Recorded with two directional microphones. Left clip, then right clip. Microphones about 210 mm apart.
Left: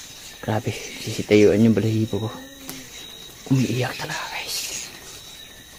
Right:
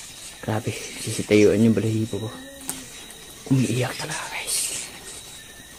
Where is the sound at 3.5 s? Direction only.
10° left (ahead or behind).